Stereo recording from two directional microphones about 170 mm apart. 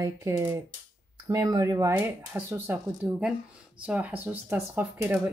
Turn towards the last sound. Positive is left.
turn(degrees=-10)  # may be behind; listen again after turning